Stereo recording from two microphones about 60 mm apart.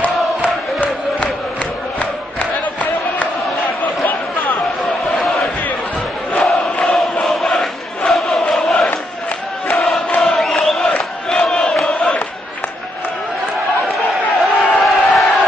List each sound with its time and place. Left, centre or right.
2.3 s chant: left
5.1 s crowd: centre
8.1 s chant: centre
10.1 s crowd: centre
14.4 s crowd: centre